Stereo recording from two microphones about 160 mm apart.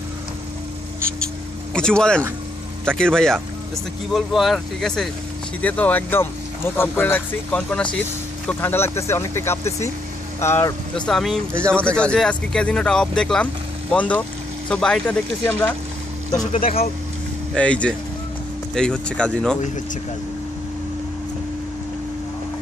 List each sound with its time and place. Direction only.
1.7 s speech: 5° left (ahead or behind)
11.0 s speech: 5° left (ahead or behind)
16.5 s speech: 60° left (ahead or behind)
17.6 s speech: 5° left (ahead or behind)